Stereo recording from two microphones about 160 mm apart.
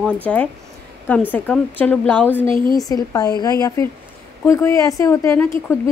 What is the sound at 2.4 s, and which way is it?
Speech, 30° right (ahead or behind).